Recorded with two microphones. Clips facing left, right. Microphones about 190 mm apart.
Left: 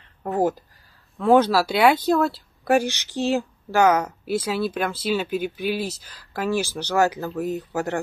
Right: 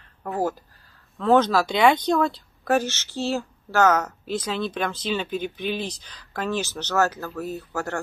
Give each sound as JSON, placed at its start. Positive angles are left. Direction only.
{"t": 0.2, "sound": "speech", "side_deg": 20}